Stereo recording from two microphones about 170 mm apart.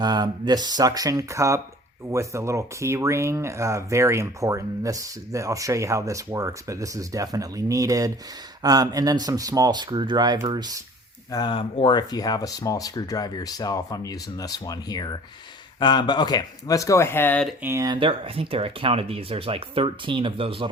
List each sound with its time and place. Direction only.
0.0 s speech: 25° right (ahead or behind)
11.3 s speech: 25° left (ahead or behind); by 17.5 s 10° left (ahead or behind)
17.6 s speech: 15° right (ahead or behind)